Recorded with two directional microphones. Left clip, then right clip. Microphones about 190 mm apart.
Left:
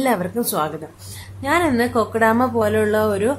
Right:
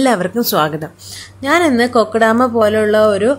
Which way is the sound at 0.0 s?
20° right (ahead or behind).